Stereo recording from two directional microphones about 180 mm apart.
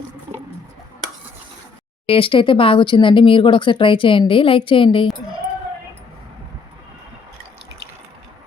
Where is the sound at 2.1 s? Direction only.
30° left (ahead or behind).